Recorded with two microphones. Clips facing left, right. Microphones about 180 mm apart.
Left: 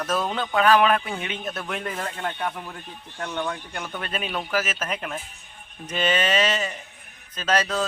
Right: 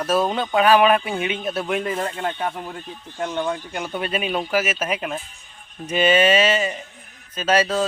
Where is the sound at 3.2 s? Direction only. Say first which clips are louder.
Right 5 dB; 15° right (ahead or behind).